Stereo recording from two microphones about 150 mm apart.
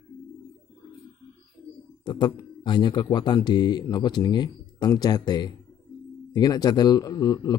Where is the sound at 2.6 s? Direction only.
30° left (ahead or behind).